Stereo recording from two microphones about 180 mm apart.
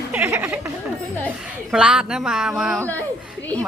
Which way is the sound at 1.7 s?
5° right (ahead or behind).